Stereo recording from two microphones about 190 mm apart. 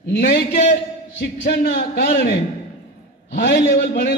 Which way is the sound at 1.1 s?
55° left (ahead or behind).